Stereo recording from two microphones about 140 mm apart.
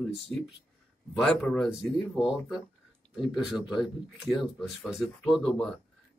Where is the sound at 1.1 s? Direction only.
5° left (ahead or behind).